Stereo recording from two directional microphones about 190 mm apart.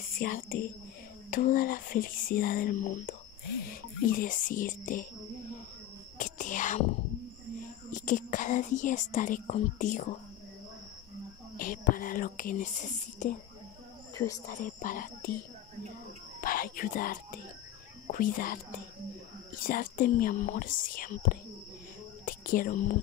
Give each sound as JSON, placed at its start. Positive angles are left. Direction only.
{"t": 0.2, "sound": "speech", "side_deg": 50}
{"t": 3.6, "sound": "music", "side_deg": 50}
{"t": 6.1, "sound": "whispering", "side_deg": 40}
{"t": 7.9, "sound": "speech", "side_deg": 45}
{"t": 11.5, "sound": "speech", "side_deg": 45}
{"t": 14.1, "sound": "speech", "side_deg": 20}
{"t": 14.5, "sound": "speech", "side_deg": 45}
{"t": 16.3, "sound": "speech", "side_deg": 50}
{"t": 19.6, "sound": "speech", "side_deg": 45}
{"t": 22.2, "sound": "whispering", "side_deg": 45}